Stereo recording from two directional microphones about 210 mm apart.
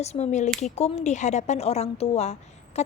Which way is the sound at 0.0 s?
30° left (ahead or behind).